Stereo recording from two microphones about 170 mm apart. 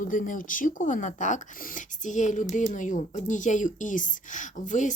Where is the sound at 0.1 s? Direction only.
50° left (ahead or behind).